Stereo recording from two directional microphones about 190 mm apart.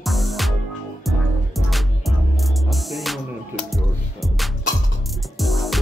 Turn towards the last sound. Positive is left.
turn(degrees=0)  # may be behind; listen again after turning